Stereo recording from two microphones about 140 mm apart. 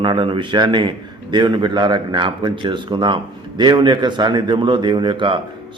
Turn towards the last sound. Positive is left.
turn(degrees=-35)  # may be behind; listen again after turning